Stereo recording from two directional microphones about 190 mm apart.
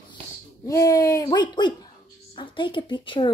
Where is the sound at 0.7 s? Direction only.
20° left (ahead or behind).